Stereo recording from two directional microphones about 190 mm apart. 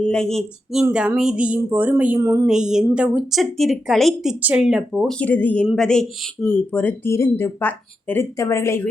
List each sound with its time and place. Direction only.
0.1 s speech: 5° left (ahead or behind); by 2.4 s 15° right (ahead or behind)
2.5 s speech: 5° right (ahead or behind); by 8.9 s 15° left (ahead or behind)